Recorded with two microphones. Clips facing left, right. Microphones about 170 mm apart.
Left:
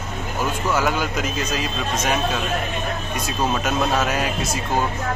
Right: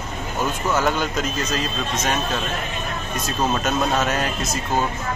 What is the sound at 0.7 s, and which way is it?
Speech, 10° left (ahead or behind).